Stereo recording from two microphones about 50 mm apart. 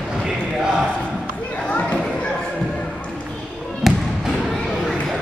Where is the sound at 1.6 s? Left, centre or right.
Left.